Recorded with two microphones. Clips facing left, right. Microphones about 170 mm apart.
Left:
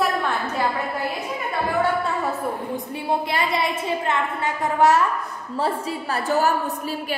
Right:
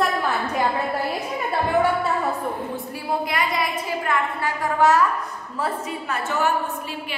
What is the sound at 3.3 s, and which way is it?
A woman's voice, 30° left (ahead or behind).